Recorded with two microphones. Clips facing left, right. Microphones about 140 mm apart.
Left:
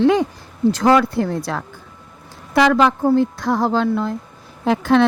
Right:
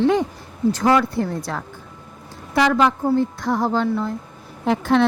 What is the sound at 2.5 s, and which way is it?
Speech, 90° left.